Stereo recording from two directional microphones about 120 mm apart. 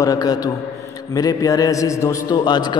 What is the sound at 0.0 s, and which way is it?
A man's voice, 30° left (ahead or behind).